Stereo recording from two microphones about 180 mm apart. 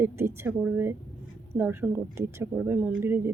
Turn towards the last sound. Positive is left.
turn(degrees=-10)  # may be behind; listen again after turning